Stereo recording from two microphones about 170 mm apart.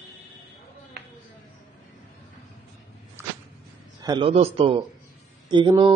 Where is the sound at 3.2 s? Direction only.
15° right (ahead or behind).